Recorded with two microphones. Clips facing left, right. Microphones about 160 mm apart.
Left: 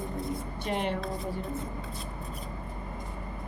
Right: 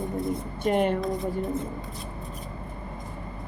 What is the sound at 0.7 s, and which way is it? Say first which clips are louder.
Speech: right 8 dB; 50° right (ahead or behind).